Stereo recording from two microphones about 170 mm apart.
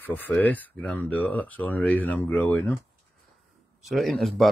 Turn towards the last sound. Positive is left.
turn(degrees=0)  # may be behind; listen again after turning